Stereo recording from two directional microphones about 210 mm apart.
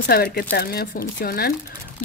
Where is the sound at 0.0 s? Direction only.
45° left (ahead or behind).